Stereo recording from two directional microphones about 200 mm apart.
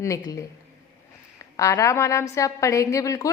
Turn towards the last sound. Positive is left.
turn(degrees=15)  # may be behind; listen again after turning